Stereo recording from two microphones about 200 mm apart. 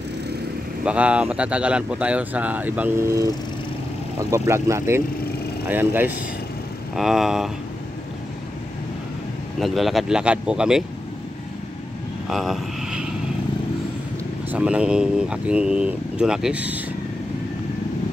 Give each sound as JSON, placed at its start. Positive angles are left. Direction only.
{"t": 0.8, "sound": "speech", "side_deg": -5}
{"t": 9.6, "sound": "speech", "side_deg": 0}
{"t": 12.3, "sound": "vehicle", "side_deg": 0}
{"t": 14.5, "sound": "speech", "side_deg": -5}